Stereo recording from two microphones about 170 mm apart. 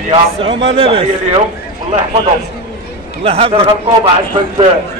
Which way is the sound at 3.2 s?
35° right (ahead or behind).